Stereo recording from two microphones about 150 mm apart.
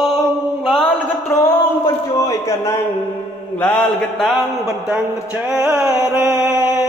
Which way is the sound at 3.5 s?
10° left (ahead or behind).